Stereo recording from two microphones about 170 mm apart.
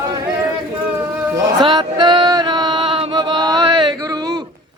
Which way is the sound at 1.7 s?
25° right (ahead or behind).